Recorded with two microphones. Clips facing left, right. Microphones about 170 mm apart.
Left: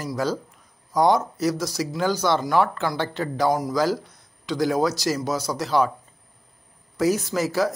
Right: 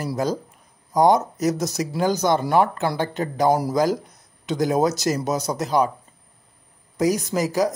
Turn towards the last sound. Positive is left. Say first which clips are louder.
# right 2 dB
turn(degrees=-15)  # may be behind; listen again after turning